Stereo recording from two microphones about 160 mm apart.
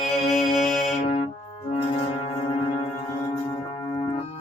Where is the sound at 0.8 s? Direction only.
45° left (ahead or behind).